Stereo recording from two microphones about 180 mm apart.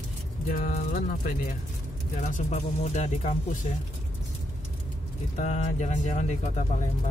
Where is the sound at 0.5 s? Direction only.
45° left (ahead or behind).